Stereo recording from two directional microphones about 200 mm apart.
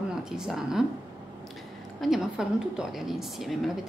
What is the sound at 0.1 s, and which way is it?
Speech, 5° right (ahead or behind).